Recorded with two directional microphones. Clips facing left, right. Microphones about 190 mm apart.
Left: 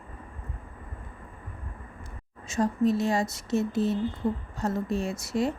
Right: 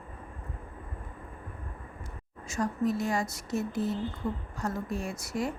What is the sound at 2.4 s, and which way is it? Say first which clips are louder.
Speech: left 5 dB; 25° left (ahead or behind).